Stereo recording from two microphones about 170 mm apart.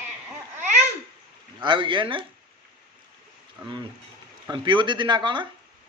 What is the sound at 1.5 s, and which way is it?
Speech, 30° right (ahead or behind).